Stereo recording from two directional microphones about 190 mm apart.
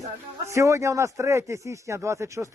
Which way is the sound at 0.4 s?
15° right (ahead or behind).